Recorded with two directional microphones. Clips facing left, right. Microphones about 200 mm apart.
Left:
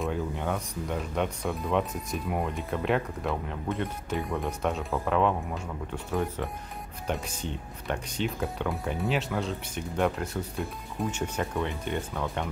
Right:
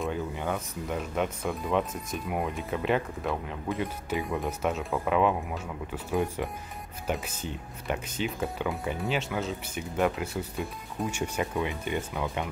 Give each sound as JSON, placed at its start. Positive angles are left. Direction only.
{"t": 0.0, "sound": "speech", "side_deg": 0}